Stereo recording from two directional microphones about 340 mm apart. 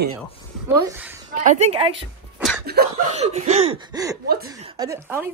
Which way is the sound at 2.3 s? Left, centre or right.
Centre.